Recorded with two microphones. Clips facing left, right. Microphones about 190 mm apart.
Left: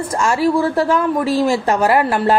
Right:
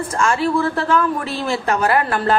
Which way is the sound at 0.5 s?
35° left (ahead or behind).